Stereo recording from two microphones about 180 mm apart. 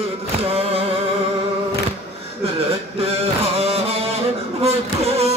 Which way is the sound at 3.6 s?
35° right (ahead or behind).